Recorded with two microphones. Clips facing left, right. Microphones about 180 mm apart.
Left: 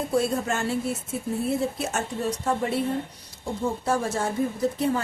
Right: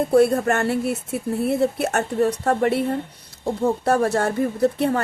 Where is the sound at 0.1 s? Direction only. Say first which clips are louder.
Right 8 dB; 60° right (ahead or behind).